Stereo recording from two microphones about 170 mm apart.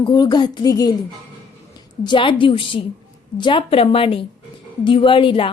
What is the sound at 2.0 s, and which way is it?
A woman's voice, 30° left (ahead or behind).